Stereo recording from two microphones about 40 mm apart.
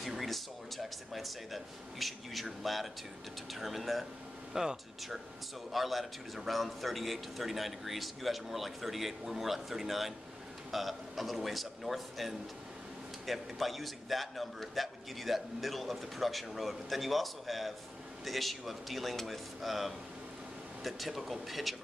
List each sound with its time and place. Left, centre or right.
0.0 s a man's voice: centre
4.6 s speech: centre
5.7 s a man's voice: centre